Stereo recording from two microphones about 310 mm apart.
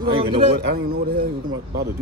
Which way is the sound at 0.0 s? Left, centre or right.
Right.